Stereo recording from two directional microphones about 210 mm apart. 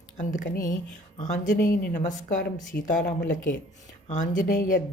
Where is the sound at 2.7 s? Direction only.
50° left (ahead or behind).